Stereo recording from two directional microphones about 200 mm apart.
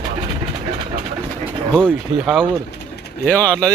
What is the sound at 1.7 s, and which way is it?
Speech, 5° left (ahead or behind).